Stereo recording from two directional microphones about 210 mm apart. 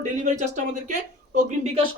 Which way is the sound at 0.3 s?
35° right (ahead or behind).